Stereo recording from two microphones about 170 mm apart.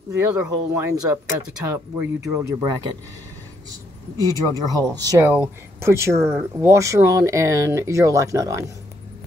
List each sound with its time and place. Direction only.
0.2 s speech: 15° right (ahead or behind)
4.2 s speech: 20° right (ahead or behind)